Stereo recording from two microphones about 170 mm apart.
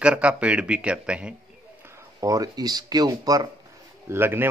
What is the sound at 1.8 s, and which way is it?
A man's voice, 20° right (ahead or behind).